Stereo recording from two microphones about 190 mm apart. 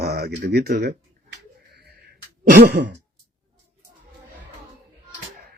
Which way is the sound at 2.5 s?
55° right (ahead or behind).